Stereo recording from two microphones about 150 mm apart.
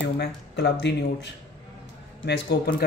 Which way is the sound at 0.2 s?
90° left.